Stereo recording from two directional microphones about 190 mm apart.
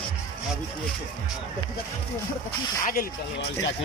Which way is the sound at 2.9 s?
50° left (ahead or behind).